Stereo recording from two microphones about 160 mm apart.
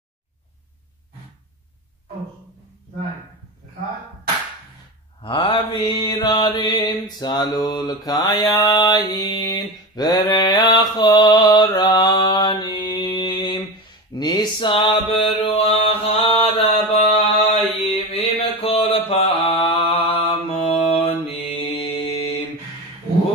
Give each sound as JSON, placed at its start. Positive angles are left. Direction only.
{"t": 5.2, "sound": "mantra", "side_deg": 35}
{"t": 8.5, "sound": "a sound", "side_deg": 25}
{"t": 9.9, "sound": "mantra", "side_deg": 25}